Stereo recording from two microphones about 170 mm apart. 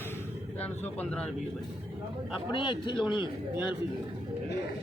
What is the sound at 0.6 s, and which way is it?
Speech, 10° left (ahead or behind).